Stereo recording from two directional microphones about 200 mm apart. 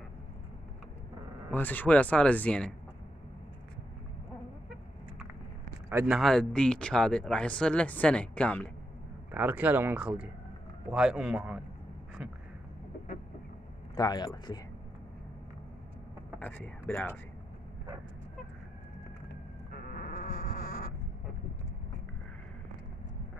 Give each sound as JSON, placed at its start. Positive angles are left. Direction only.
{"t": 1.5, "sound": "speech", "side_deg": 10}
{"t": 5.9, "sound": "a sound", "side_deg": -15}
{"t": 6.1, "sound": "speech", "side_deg": 0}
{"t": 9.3, "sound": "speech", "side_deg": -10}
{"t": 13.9, "sound": "speech", "side_deg": 20}
{"t": 16.3, "sound": "speech", "side_deg": 10}
{"t": 19.7, "sound": "insect", "side_deg": 45}